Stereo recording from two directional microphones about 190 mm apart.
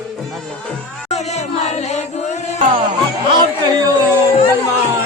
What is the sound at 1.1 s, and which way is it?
Singing, 35° left (ahead or behind).